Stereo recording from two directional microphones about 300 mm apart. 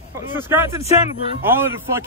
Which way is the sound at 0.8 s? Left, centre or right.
Left.